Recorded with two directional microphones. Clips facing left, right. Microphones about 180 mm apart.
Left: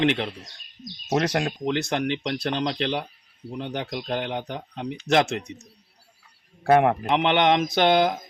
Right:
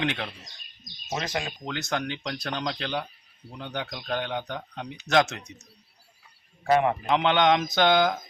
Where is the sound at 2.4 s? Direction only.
20° left (ahead or behind).